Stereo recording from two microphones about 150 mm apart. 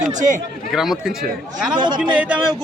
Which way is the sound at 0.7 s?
Centre (ahead or behind).